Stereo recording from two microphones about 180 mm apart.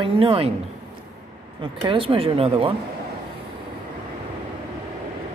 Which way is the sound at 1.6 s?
30° right (ahead or behind).